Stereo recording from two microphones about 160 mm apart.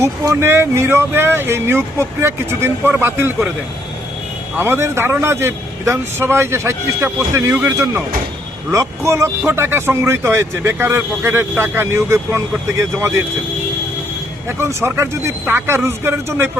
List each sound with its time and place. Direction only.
0.0 s speech: 15° right (ahead or behind)
4.5 s speech: 15° right (ahead or behind)
14.4 s speech: 15° right (ahead or behind)